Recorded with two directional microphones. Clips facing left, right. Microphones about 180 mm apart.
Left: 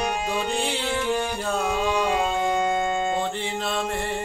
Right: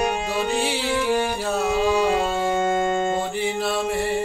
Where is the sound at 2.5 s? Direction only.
50° right (ahead or behind).